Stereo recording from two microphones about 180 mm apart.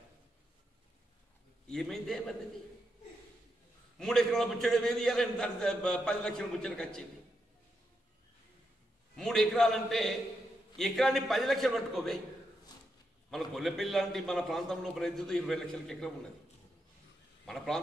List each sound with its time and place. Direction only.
1.7 s a man's voice: centre (ahead or behind)
4.0 s a man's voice: centre (ahead or behind)
9.1 s a man's voice: 5° left (ahead or behind)
13.3 s a man's voice: centre (ahead or behind)
17.5 s a man's voice: centre (ahead or behind)